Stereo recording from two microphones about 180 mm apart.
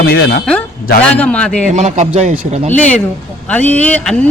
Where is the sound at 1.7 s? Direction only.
40° right (ahead or behind).